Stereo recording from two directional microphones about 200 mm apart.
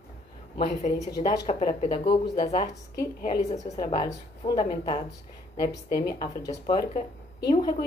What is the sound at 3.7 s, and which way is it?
Speech, 25° left (ahead or behind).